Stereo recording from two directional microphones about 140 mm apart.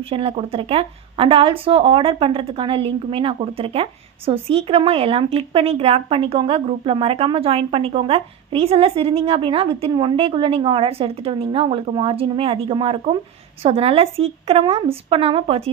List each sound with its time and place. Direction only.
0.1 s a woman's voice: 45° right (ahead or behind)